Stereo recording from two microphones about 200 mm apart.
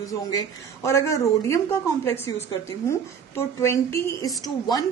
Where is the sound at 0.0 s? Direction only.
15° left (ahead or behind).